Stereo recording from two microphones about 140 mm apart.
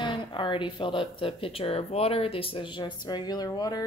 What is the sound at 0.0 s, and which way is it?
Speech, 35° left (ahead or behind).